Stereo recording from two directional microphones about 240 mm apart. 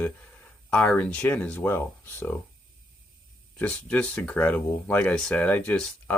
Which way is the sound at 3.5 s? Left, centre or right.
Centre.